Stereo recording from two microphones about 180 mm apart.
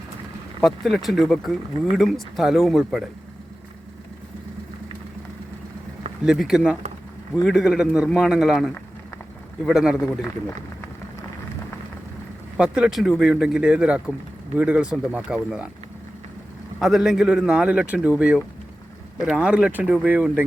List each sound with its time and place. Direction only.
0.6 s speech: centre (ahead or behind)
6.2 s speech: centre (ahead or behind)
12.5 s speech: 5° right (ahead or behind)
16.8 s speech: centre (ahead or behind)